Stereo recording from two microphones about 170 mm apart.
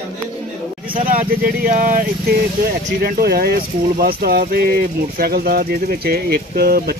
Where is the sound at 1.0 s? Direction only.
55° right (ahead or behind).